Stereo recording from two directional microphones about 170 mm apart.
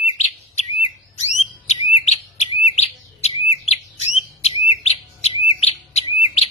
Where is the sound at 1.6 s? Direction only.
40° left (ahead or behind).